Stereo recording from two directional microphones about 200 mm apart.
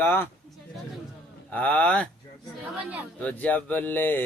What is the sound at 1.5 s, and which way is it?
Mantra, 5° left (ahead or behind).